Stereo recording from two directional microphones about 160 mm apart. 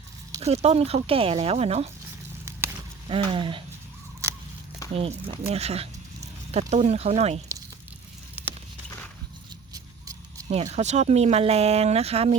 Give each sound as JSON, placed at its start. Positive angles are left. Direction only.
{"t": 0.3, "sound": "speech", "side_deg": -40}
{"t": 3.1, "sound": "speech", "side_deg": -30}
{"t": 4.9, "sound": "speech", "side_deg": -40}
{"t": 9.7, "sound": "music", "side_deg": -20}
{"t": 10.5, "sound": "speech", "side_deg": -45}